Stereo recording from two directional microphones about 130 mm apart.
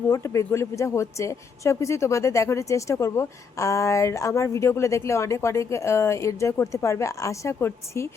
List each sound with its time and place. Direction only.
0.1 s speech: 20° left (ahead or behind)